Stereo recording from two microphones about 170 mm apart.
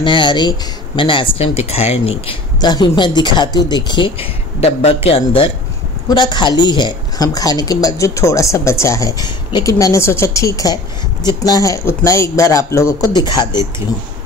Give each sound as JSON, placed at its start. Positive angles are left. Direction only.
{"t": 0.0, "sound": "speech", "side_deg": 25}